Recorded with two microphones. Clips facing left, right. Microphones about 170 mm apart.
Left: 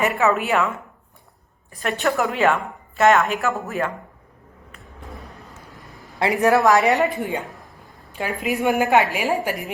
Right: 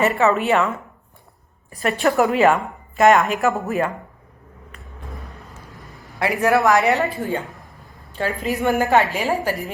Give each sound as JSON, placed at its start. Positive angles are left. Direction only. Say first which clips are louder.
{"t": 0.1, "sound": "a woman's voice", "louder": "right 2 dB", "side_deg": 0}
{"t": 1.8, "sound": "a woman's voice", "louder": "right 4 dB", "side_deg": 0}
{"t": 4.7, "sound": "a sound", "louder": "even", "side_deg": 0}
{"t": 6.1, "sound": "a woman's voice", "louder": "left 1 dB", "side_deg": 20}
{"t": 7.4, "sound": "a sound", "louder": "even", "side_deg": 0}
{"t": 8.2, "sound": "a woman's voice", "louder": "right 1 dB", "side_deg": 15}